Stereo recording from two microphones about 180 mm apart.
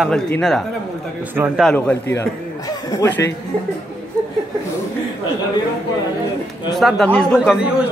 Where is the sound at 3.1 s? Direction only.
80° left.